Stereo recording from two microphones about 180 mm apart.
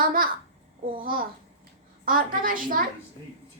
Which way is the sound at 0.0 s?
50° right (ahead or behind).